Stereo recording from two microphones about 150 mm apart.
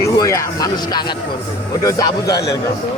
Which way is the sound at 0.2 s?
20° left (ahead or behind).